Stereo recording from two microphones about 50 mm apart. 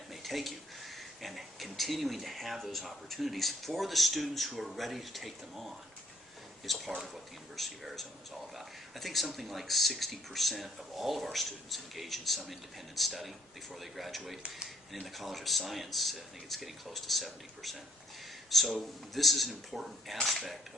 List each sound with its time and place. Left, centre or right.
0.1 s a sound: centre
1.2 s speech: centre
18.8 s speech: centre